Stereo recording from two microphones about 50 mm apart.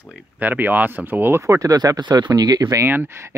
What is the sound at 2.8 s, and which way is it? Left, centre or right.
Speech, right.